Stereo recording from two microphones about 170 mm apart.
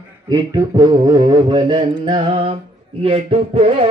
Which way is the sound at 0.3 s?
25° right (ahead or behind).